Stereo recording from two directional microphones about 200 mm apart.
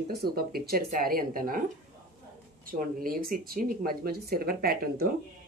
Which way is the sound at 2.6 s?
45° right (ahead or behind).